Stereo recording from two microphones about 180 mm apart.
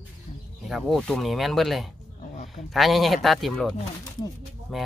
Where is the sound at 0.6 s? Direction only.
Centre (ahead or behind).